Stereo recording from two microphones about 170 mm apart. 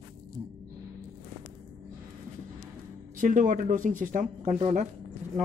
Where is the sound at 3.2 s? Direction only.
50° right (ahead or behind).